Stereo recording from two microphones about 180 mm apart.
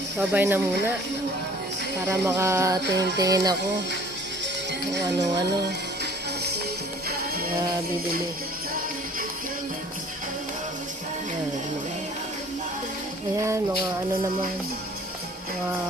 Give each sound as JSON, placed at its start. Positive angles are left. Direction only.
{"t": 0.2, "sound": "speech", "side_deg": -10}
{"t": 2.0, "sound": "speech", "side_deg": -15}
{"t": 2.8, "sound": "music", "side_deg": -70}
{"t": 3.2, "sound": "music", "side_deg": -20}